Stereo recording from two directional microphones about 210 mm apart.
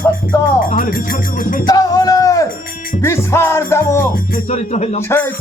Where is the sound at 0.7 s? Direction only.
40° left (ahead or behind).